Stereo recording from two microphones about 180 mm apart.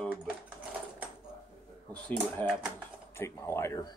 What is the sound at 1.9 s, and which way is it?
A man's voice, 10° left (ahead or behind).